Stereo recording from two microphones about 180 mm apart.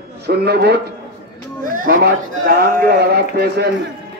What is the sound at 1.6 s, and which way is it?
A man's voice, 50° right (ahead or behind).